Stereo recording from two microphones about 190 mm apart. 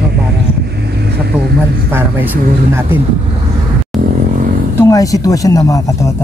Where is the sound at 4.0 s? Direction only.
45° right (ahead or behind).